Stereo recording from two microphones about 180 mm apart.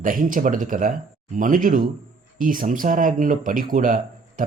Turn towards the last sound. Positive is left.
turn(degrees=-50)  # may be behind; listen again after turning